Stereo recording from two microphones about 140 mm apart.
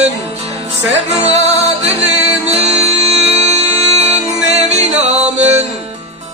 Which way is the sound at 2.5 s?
50° right (ahead or behind).